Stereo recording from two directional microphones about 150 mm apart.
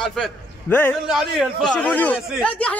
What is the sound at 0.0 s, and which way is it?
A man's voice, 5° left (ahead or behind).